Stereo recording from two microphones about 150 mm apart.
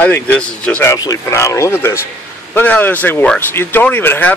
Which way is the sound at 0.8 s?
20° left (ahead or behind).